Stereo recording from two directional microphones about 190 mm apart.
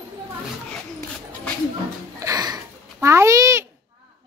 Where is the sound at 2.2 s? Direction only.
20° right (ahead or behind).